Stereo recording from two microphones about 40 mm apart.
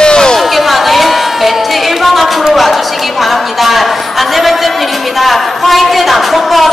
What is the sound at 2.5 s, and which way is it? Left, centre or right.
A woman's voice, centre.